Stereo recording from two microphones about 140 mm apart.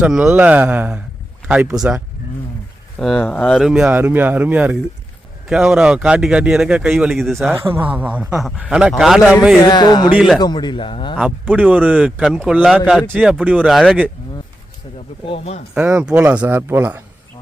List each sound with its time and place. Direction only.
0.0 s speech: 5° right (ahead or behind)
3.0 s speech: centre (ahead or behind)
7.5 s speech: 15° right (ahead or behind)
9.6 s a sound: 30° left (ahead or behind)
10.2 s speech: 5° right (ahead or behind)
10.4 s a man's voice: 30° left (ahead or behind)
11.2 s speech: 10° right (ahead or behind)
15.3 s speech: 50° left (ahead or behind)
15.7 s speech: 10° right (ahead or behind)